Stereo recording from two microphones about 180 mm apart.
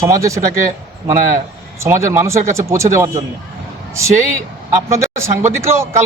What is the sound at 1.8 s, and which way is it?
Speech, 15° right (ahead or behind).